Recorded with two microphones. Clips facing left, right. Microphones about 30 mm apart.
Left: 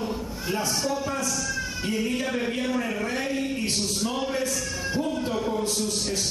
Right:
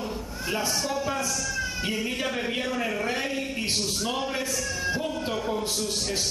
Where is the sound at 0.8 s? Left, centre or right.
Centre.